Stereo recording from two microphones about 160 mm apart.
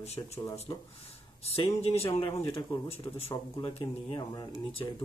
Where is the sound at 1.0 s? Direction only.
40° left (ahead or behind).